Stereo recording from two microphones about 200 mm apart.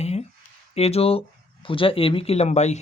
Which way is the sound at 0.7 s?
30° left (ahead or behind).